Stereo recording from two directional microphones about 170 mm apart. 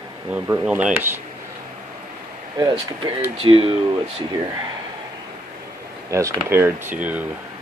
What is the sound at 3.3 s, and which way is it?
Speech, 30° right (ahead or behind).